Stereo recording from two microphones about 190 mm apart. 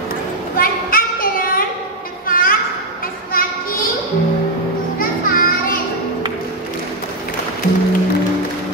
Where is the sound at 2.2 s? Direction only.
50° left (ahead or behind).